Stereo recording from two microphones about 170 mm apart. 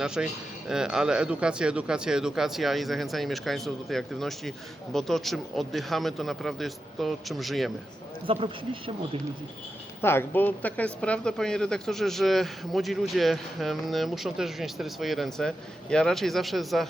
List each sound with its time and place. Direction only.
0.0 s speech: 5° right (ahead or behind)
8.3 s speech: 30° right (ahead or behind)
10.0 s speech: 15° left (ahead or behind)